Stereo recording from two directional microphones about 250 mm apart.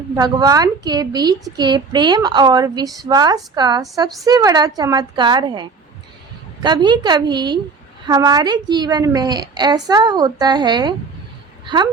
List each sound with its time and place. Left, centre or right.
0.2 s a woman's voice: centre